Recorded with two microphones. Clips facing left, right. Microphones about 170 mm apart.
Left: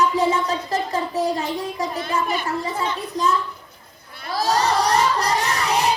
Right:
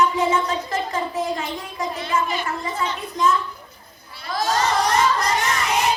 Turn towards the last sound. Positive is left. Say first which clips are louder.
# left 1 dB
turn(degrees=35)  # may be behind; listen again after turning